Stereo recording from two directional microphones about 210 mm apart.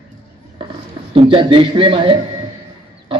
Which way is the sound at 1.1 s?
25° right (ahead or behind).